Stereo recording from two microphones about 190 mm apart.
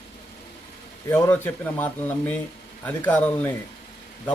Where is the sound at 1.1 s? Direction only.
10° left (ahead or behind).